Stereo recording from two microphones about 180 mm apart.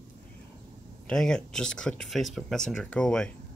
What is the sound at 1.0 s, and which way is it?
Speech, 5° left (ahead or behind).